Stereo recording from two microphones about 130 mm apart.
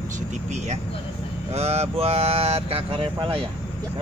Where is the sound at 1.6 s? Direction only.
55° right (ahead or behind).